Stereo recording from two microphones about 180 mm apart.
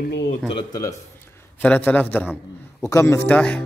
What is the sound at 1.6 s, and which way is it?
Speech, 10° left (ahead or behind).